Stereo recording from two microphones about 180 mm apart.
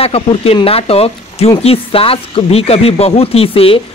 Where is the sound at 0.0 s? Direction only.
35° left (ahead or behind).